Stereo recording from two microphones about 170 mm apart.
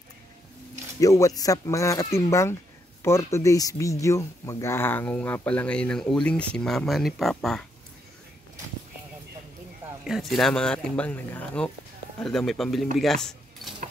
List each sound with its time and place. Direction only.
0.9 s speech: 20° left (ahead or behind); by 7.6 s centre (ahead or behind)
10.0 s speech: centre (ahead or behind)
12.9 s keys jangling: centre (ahead or behind)